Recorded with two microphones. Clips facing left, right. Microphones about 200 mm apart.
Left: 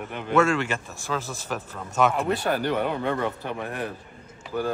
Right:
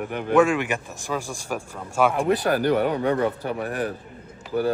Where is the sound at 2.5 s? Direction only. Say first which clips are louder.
Right 4 dB; 45° right (ahead or behind).